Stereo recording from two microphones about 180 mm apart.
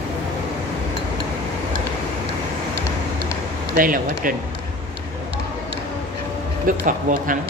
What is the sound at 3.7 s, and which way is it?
Speech, 50° right (ahead or behind).